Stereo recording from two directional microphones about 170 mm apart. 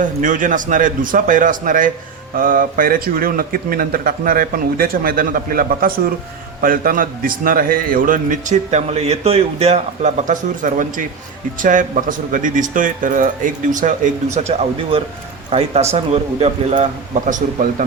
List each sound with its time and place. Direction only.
0.0 s a man's voice: 50° right (ahead or behind)